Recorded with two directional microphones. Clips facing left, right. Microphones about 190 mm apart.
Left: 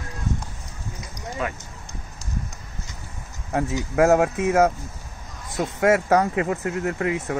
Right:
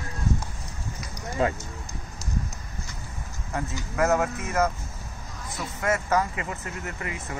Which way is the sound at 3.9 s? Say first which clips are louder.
Left 6 dB; 70° left (ahead or behind).